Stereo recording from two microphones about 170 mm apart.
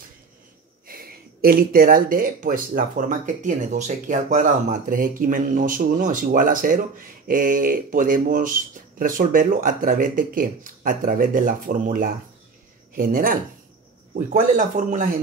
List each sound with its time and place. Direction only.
0.8 s speech: 60° right (ahead or behind)